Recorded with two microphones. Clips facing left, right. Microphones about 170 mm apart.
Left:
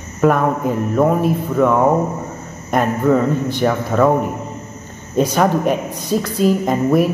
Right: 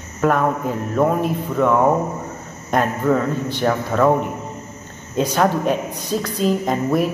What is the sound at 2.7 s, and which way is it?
A man's voice, 10° left (ahead or behind).